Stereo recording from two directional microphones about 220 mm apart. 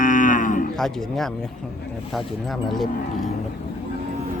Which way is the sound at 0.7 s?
Centre (ahead or behind).